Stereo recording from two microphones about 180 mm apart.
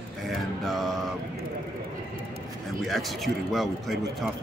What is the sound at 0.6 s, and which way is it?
Speech, centre (ahead or behind).